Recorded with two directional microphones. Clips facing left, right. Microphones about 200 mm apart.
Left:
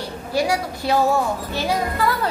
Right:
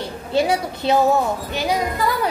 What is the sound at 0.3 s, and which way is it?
A woman's voice, 25° right (ahead or behind).